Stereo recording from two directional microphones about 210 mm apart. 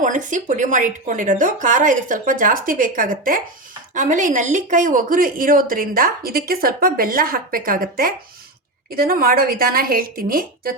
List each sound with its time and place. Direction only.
0.0 s a woman's voice: 40° right (ahead or behind)